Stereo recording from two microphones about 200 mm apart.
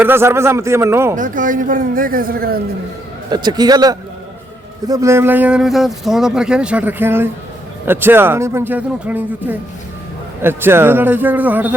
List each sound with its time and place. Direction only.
0.0 s speech: 10° right (ahead or behind)
1.1 s speech: 40° right (ahead or behind)
3.2 s a man's voice: 20° right (ahead or behind)